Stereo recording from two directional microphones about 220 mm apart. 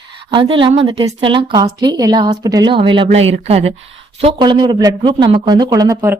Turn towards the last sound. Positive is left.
turn(degrees=-15)  # may be behind; listen again after turning